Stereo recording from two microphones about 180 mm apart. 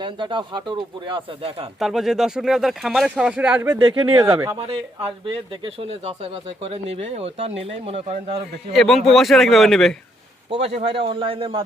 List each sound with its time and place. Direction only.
0.0 s speech: 25° right (ahead or behind)
1.8 s speech: centre (ahead or behind)
5.2 s speech: 30° right (ahead or behind)
8.7 s speech: centre (ahead or behind)
10.8 s speech: 30° right (ahead or behind)